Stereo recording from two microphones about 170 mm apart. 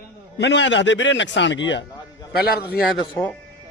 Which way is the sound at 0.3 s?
90° left.